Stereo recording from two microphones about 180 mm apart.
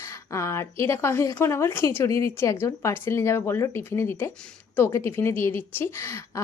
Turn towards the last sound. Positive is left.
turn(degrees=15)  # may be behind; listen again after turning